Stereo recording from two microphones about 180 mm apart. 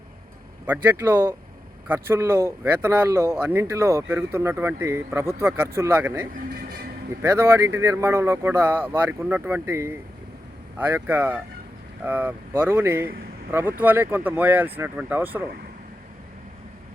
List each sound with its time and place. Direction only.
0.7 s speech: 10° right (ahead or behind)
6.5 s music: 60° right (ahead or behind)
7.2 s speech: 15° right (ahead or behind)